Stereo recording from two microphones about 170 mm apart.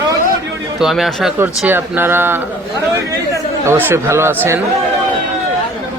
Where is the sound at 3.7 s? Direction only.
15° right (ahead or behind).